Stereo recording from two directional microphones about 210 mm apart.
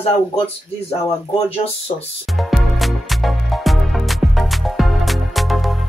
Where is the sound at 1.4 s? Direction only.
30° left (ahead or behind).